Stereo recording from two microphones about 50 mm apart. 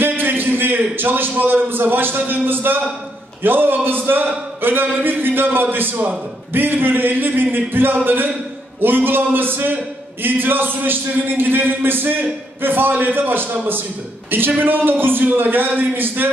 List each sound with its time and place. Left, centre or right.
0.0 s a man's voice: right
4.6 s a sound: right
4.9 s a man's voice: right